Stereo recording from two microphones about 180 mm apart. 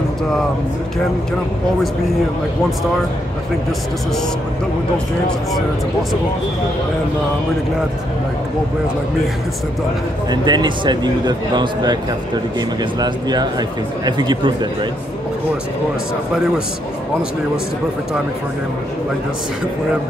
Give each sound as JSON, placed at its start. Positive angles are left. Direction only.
{"t": 10.3, "sound": "speech", "side_deg": -25}